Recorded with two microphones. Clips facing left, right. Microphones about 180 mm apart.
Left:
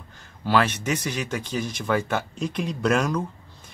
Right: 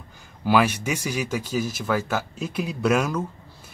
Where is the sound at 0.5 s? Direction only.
10° right (ahead or behind).